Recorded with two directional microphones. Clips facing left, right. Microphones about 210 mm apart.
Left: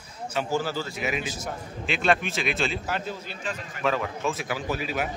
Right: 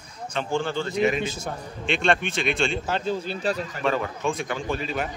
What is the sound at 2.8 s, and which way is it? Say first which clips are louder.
Speech: right 5 dB; 30° right (ahead or behind).